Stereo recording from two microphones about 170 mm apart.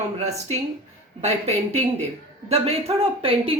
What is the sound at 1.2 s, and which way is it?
Speech, 40° right (ahead or behind).